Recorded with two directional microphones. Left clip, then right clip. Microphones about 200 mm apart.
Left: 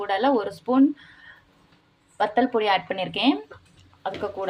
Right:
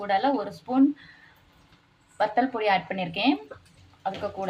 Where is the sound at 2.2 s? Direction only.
30° left (ahead or behind).